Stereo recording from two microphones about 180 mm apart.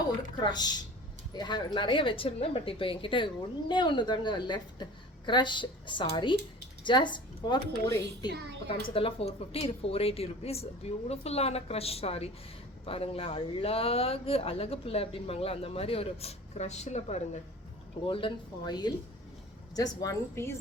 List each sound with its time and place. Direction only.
0.3 s a woman's voice: 25° left (ahead or behind)